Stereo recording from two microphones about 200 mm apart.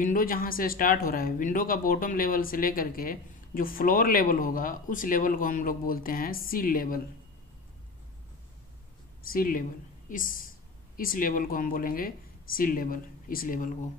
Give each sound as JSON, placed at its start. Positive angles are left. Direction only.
{"t": 0.0, "sound": "speech", "side_deg": 45}
{"t": 9.3, "sound": "speech", "side_deg": 45}